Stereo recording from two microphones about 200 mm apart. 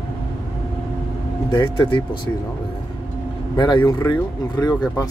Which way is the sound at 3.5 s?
20° left (ahead or behind).